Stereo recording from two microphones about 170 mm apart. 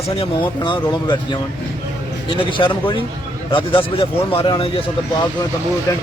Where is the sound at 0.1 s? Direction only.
30° left (ahead or behind).